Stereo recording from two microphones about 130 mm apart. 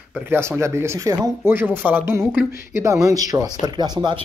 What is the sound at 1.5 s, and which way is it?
Speech, 15° right (ahead or behind).